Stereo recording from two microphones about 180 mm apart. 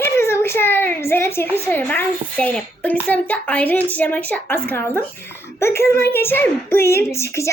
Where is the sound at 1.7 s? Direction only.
10° left (ahead or behind).